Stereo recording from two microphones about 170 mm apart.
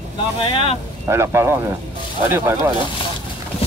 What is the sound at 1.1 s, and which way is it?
Speech, 15° right (ahead or behind).